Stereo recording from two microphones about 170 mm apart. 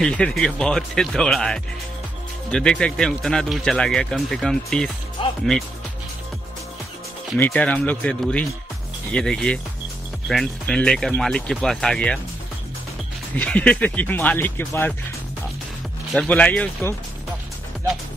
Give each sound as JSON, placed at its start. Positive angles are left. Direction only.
{"t": 0.0, "sound": "speech", "side_deg": 5}
{"t": 5.2, "sound": "music", "side_deg": 30}
{"t": 7.3, "sound": "speech", "side_deg": 10}
{"t": 13.4, "sound": "speech", "side_deg": 5}
{"t": 16.1, "sound": "speech", "side_deg": 5}